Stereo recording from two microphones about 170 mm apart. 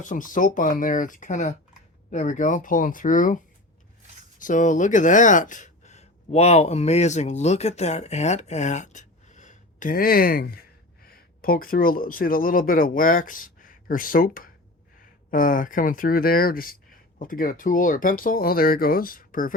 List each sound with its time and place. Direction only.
0.0 s speech: 50° left (ahead or behind)